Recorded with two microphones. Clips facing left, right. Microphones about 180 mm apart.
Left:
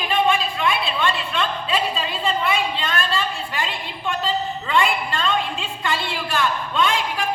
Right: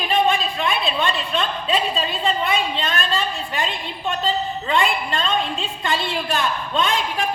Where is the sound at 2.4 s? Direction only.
20° right (ahead or behind).